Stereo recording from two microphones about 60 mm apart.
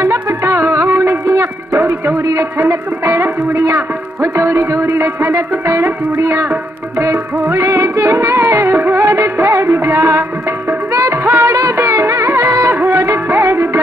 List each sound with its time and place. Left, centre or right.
0.0 s music: right
0.8 s music: right
1.2 s music: right
7.6 s music: right
10.9 s music: right
11.2 s music: right